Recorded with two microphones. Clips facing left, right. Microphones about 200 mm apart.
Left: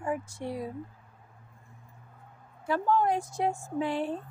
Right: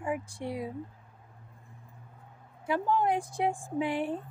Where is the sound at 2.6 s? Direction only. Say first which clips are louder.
Left 1 dB; 15° right (ahead or behind).